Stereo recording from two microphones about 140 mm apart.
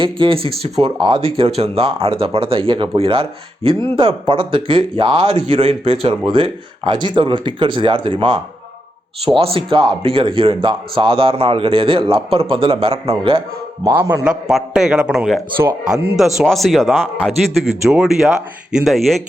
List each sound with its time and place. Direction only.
0.0 s a man's voice: 40° right (ahead or behind)
13.9 s a man's voice: 20° right (ahead or behind)
14.3 s a man's voice: 5° right (ahead or behind)